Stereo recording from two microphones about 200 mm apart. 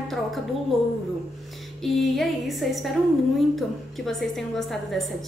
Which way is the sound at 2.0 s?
Centre (ahead or behind).